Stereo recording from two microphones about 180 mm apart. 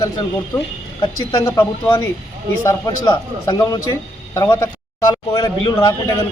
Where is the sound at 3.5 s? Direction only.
20° left (ahead or behind).